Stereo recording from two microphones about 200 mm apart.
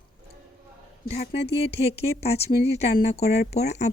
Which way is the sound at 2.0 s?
30° left (ahead or behind).